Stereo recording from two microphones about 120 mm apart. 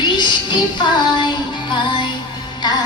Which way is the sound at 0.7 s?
40° left (ahead or behind).